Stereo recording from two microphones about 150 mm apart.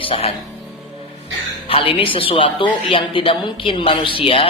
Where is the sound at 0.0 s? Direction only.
40° left (ahead or behind).